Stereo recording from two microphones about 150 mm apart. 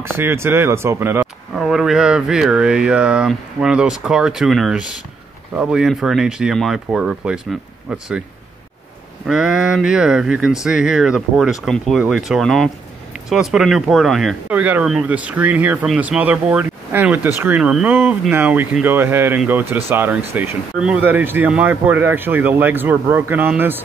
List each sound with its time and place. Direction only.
0.0 s speech: 15° right (ahead or behind)
1.5 s speech: centre (ahead or behind)
9.3 s speech: 5° right (ahead or behind)